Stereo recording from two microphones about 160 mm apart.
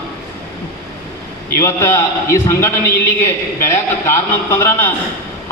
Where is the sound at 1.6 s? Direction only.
15° left (ahead or behind).